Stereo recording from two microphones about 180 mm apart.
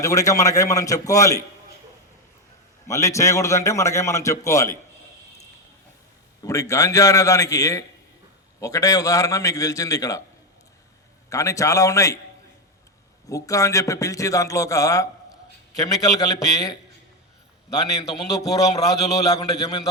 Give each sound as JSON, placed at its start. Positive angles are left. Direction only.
{"t": 0.0, "sound": "a man's voice", "side_deg": 20}
{"t": 2.8, "sound": "a man's voice", "side_deg": 15}
{"t": 6.4, "sound": "a man's voice", "side_deg": 15}
{"t": 11.3, "sound": "a man's voice", "side_deg": 15}
{"t": 13.2, "sound": "a man's voice", "side_deg": 20}
{"t": 17.9, "sound": "a man's voice", "side_deg": 20}